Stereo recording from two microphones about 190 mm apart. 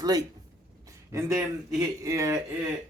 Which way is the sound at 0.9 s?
15° right (ahead or behind).